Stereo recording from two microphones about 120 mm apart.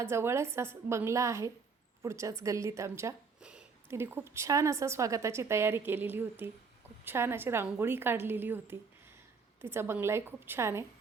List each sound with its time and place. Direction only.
0.0 s a woman's voice: 20° right (ahead or behind)